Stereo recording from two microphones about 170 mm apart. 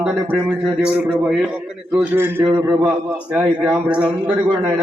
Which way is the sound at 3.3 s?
5° right (ahead or behind).